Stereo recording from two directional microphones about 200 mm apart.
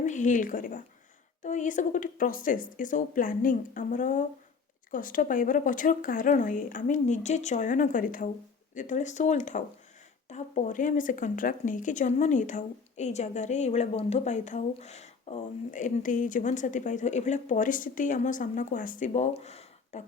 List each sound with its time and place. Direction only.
0.0 s speech: 40° left (ahead or behind)